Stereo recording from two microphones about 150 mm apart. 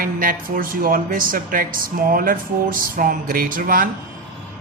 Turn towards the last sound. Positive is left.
turn(degrees=-70)  # may be behind; listen again after turning